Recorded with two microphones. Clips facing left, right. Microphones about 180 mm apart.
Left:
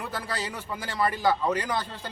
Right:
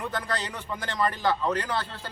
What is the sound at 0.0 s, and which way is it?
A man's voice, 5° left (ahead or behind).